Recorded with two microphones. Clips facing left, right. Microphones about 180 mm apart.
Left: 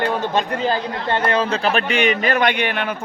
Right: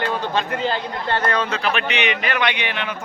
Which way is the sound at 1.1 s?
25° left (ahead or behind).